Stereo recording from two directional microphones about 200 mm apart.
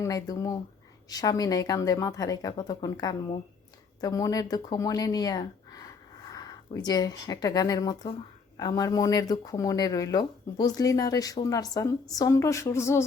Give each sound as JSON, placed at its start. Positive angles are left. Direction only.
{"t": 0.0, "sound": "a woman's voice", "side_deg": 15}